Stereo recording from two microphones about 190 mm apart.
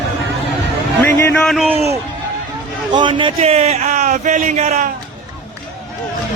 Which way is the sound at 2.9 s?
25° right (ahead or behind).